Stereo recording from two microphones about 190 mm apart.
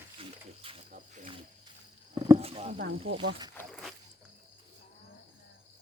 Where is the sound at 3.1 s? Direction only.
85° right.